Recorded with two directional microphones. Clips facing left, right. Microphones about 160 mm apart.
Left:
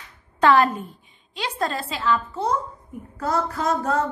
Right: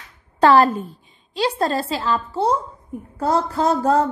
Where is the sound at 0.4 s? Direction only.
35° right (ahead or behind).